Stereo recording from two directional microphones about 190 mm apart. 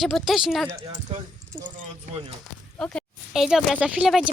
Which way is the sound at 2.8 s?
5° left (ahead or behind).